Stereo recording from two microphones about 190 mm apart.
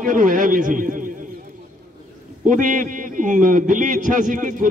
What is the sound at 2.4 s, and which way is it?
A man's voice, 40° right (ahead or behind).